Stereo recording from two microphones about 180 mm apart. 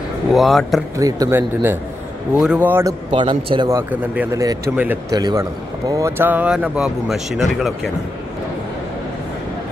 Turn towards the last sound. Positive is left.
turn(degrees=0)  # may be behind; listen again after turning